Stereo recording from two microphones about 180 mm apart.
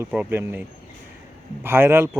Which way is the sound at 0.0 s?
10° right (ahead or behind).